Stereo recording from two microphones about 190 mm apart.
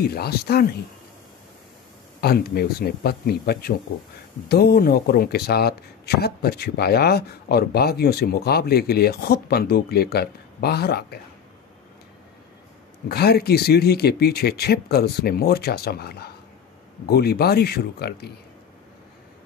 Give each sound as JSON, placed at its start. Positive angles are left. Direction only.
{"t": 0.0, "sound": "speech", "side_deg": 55}
{"t": 2.1, "sound": "speech", "side_deg": 55}
{"t": 13.1, "sound": "speech", "side_deg": 55}